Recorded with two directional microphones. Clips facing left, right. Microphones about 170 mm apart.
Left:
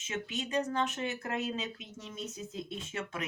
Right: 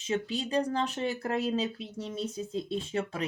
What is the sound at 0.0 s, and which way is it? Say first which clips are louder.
Speech: right 6 dB; 30° right (ahead or behind).